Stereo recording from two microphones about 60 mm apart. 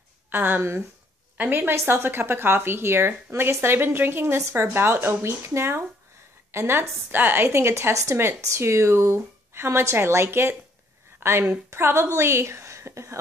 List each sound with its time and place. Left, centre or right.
0.3 s speech: right
7.4 s speech: right
7.9 s speech: right
8.2 s speech: right
11.1 s a sound: right
11.7 s speech: right